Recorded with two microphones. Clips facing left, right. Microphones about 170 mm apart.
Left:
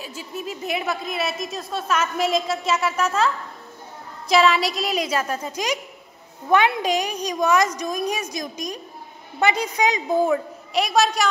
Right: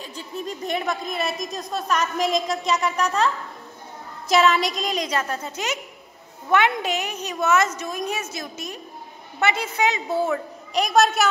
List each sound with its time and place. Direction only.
0.0 s a woman's voice: 5° left (ahead or behind)
4.3 s a woman's voice: centre (ahead or behind)
10.7 s a woman's voice: centre (ahead or behind)